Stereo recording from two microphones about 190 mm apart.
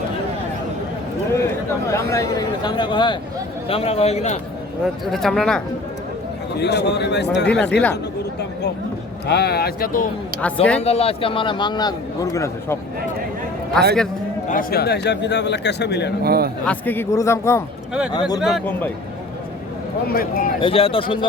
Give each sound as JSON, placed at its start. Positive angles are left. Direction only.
{"t": 1.9, "sound": "a man's voice", "side_deg": 15}
{"t": 5.0, "sound": "speech", "side_deg": 0}
{"t": 6.6, "sound": "speech", "side_deg": 60}
{"t": 9.2, "sound": "speech", "side_deg": 60}
{"t": 10.4, "sound": "speech", "side_deg": 5}
{"t": 10.8, "sound": "a man's voice", "side_deg": 35}
{"t": 13.7, "sound": "speech", "side_deg": 5}
{"t": 14.4, "sound": "speech", "side_deg": 45}
{"t": 16.2, "sound": "a man's voice", "side_deg": -55}
{"t": 16.6, "sound": "a man's voice", "side_deg": 10}
{"t": 18.1, "sound": "a man's voice", "side_deg": 25}
{"t": 18.3, "sound": "speech", "side_deg": 0}
{"t": 20.1, "sound": "speech", "side_deg": 50}
{"t": 20.6, "sound": "a man's voice", "side_deg": 30}